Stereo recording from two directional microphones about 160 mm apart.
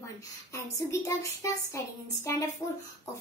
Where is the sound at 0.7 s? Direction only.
20° left (ahead or behind).